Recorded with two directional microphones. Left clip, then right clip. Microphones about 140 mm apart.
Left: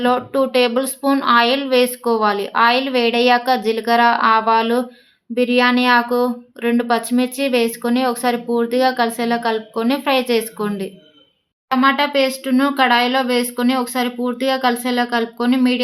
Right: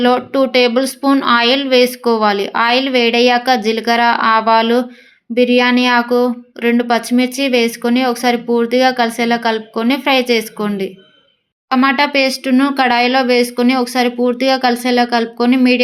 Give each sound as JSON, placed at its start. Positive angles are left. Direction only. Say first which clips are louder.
{"t": 0.0, "sound": "speech", "louder": "right 4 dB", "side_deg": -25}